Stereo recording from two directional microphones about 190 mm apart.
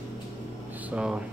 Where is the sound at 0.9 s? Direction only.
5° right (ahead or behind).